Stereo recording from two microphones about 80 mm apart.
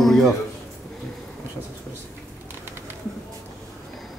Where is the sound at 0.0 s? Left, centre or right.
Centre.